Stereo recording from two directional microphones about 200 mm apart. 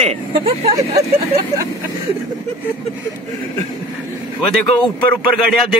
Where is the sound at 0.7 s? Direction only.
15° right (ahead or behind).